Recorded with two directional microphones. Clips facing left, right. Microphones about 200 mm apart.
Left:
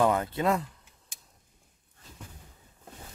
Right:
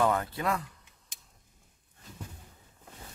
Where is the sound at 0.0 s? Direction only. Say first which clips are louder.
Left 3 dB; 20° left (ahead or behind).